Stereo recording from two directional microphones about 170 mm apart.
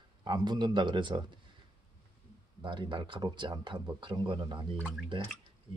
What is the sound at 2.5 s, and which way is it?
Speech, 25° right (ahead or behind).